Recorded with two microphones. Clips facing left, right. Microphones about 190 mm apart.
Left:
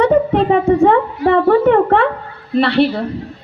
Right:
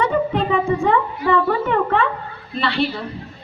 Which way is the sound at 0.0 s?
70° left (ahead or behind).